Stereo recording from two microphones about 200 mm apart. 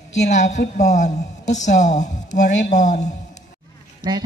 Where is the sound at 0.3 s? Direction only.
35° left (ahead or behind).